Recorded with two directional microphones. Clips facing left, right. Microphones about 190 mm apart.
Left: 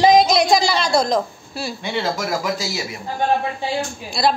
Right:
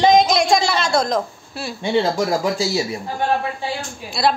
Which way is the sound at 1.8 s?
30° right (ahead or behind).